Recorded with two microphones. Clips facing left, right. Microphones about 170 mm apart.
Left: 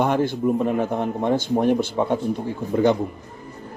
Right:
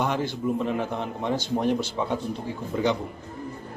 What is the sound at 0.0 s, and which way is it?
A man's voice, 50° left (ahead or behind).